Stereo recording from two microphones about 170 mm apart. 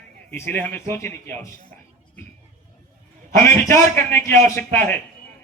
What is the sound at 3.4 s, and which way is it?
A man's voice, 10° left (ahead or behind).